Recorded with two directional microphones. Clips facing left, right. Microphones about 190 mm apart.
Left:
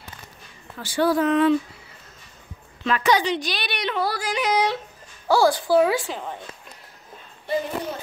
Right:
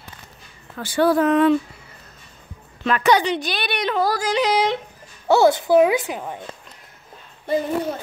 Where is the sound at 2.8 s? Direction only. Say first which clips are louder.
Right 3 dB; 55° right (ahead or behind); by 4.6 s 40° right (ahead or behind).